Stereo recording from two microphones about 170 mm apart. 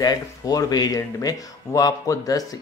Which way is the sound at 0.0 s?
20° left (ahead or behind).